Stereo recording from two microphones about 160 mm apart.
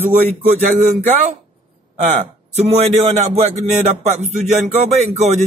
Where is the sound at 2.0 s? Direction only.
45° right (ahead or behind).